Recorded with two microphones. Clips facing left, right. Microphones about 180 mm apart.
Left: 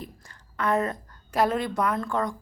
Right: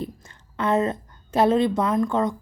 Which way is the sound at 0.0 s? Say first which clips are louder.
Right 8 dB; 25° right (ahead or behind).